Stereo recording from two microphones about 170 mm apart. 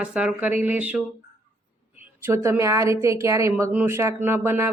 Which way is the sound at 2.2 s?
15° right (ahead or behind).